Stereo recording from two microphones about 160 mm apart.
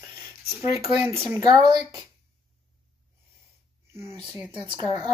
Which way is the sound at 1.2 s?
20° right (ahead or behind).